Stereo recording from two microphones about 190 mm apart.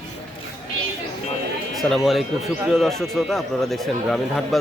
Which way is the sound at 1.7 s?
Centre (ahead or behind).